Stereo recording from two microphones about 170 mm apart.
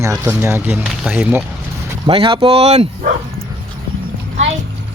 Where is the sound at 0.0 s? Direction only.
15° right (ahead or behind).